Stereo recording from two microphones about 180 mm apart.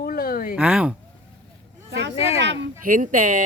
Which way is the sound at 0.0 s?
55° left (ahead or behind).